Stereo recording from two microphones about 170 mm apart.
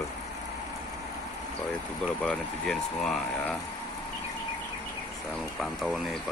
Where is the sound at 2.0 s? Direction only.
5° left (ahead or behind).